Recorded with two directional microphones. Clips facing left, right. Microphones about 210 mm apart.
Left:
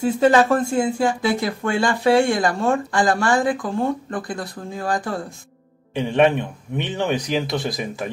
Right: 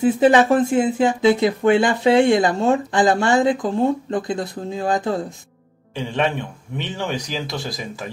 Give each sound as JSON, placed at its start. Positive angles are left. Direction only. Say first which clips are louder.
{"t": 0.0, "sound": "speech", "louder": "right 2 dB", "side_deg": -15}
{"t": 6.8, "sound": "speech", "louder": "left 3 dB", "side_deg": 20}